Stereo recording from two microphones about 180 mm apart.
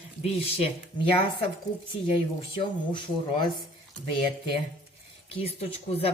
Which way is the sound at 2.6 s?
25° left (ahead or behind).